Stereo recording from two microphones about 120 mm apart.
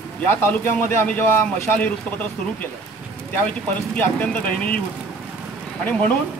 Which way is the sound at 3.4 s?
10° left (ahead or behind).